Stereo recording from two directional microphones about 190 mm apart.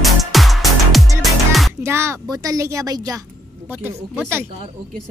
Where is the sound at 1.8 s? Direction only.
15° right (ahead or behind).